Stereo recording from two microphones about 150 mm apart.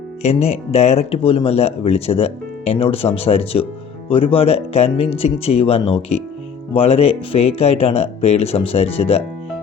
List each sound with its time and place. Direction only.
0.2 s speech: 45° left (ahead or behind)